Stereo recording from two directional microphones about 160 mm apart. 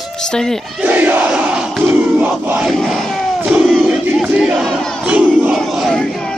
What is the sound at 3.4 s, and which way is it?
Battle cry, 5° right (ahead or behind).